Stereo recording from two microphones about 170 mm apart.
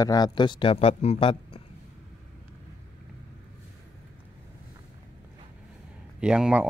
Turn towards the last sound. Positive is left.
turn(degrees=-5)  # may be behind; listen again after turning